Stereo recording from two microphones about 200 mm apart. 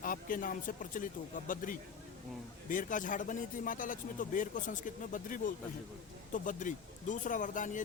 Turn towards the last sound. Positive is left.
turn(degrees=40)  # may be behind; listen again after turning